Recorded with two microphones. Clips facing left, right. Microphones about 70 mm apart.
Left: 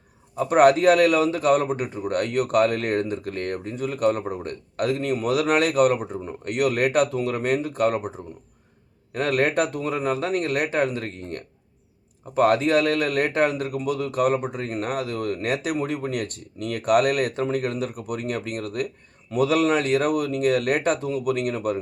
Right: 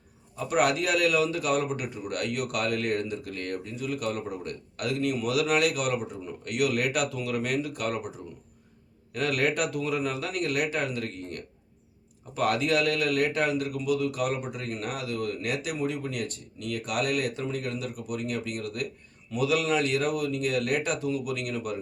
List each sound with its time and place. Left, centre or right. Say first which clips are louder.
0.3 s a man's voice: left 9 dB; left